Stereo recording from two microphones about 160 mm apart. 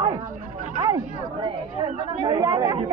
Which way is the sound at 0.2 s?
55° right (ahead or behind).